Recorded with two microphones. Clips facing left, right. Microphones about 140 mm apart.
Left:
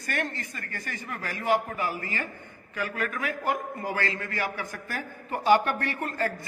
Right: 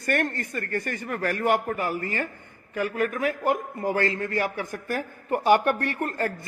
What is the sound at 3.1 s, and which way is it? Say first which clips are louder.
A man's voice: right 5 dB; 40° right (ahead or behind).